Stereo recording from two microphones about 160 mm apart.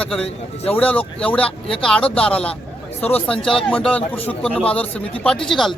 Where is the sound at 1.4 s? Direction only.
35° left (ahead or behind).